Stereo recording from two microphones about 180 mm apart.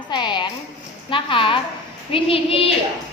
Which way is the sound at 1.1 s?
30° left (ahead or behind).